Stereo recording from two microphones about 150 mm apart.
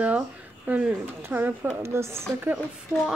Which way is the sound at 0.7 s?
10° right (ahead or behind).